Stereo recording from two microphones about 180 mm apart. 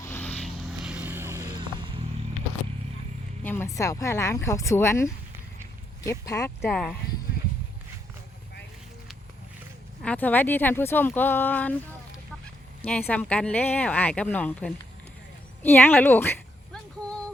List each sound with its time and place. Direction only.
0.0 s vehicle: 10° left (ahead or behind)
0.9 s vehicle: 10° right (ahead or behind); by 2.0 s 25° right (ahead or behind)
3.4 s speech: 10° left (ahead or behind)
10.0 s speech: 10° left (ahead or behind)
12.8 s speech: 10° left (ahead or behind)
15.6 s a sound: 10° left (ahead or behind)